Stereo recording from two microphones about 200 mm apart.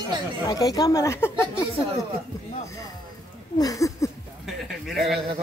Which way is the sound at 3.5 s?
15° left (ahead or behind).